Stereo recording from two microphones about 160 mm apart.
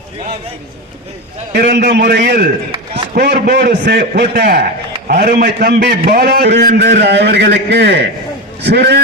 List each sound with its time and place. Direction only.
1.5 s a man's voice: 80° right